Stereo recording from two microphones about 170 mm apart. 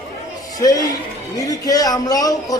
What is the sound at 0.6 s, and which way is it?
A man's voice, 20° left (ahead or behind).